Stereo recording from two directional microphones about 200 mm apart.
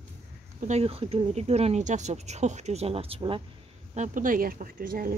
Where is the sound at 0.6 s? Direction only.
30° right (ahead or behind).